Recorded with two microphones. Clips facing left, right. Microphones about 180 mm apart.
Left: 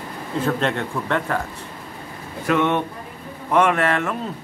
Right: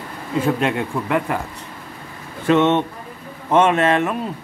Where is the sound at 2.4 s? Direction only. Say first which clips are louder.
Right 4 dB; 25° right (ahead or behind).